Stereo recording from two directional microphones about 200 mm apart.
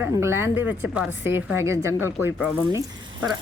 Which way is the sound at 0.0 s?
15° right (ahead or behind).